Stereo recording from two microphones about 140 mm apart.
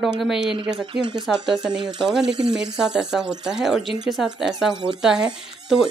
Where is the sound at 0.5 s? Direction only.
35° right (ahead or behind).